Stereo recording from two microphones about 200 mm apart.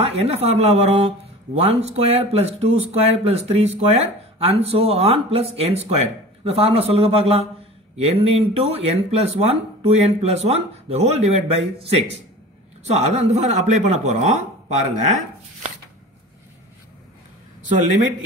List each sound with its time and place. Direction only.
0.0 s speech: 30° right (ahead or behind)